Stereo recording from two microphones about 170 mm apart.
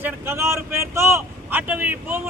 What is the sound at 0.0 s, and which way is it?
Speech, 15° right (ahead or behind).